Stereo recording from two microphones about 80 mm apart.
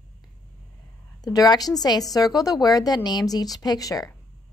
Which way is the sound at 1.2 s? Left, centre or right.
Left.